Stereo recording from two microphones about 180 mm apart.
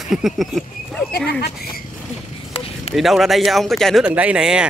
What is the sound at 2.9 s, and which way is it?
Speech, centre (ahead or behind).